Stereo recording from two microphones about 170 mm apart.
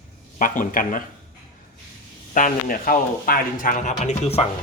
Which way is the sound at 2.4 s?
55° left (ahead or behind).